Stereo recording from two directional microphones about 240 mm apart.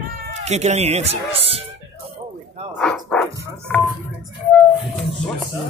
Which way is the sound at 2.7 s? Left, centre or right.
Centre.